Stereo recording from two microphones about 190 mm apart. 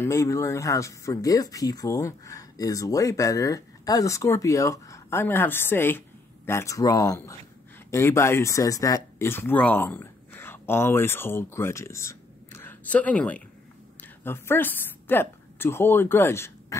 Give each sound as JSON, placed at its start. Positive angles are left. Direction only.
{"t": 0.0, "sound": "a woman's voice", "side_deg": 15}